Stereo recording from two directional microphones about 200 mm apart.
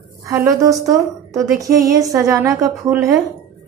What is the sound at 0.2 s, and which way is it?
A woman's voice, 15° right (ahead or behind).